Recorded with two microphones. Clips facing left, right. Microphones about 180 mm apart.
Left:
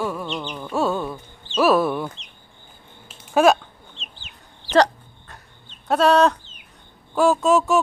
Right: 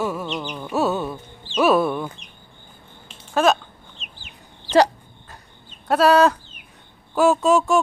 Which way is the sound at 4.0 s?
20° left (ahead or behind).